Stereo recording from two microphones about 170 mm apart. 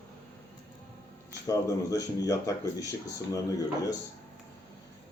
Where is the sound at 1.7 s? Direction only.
20° left (ahead or behind).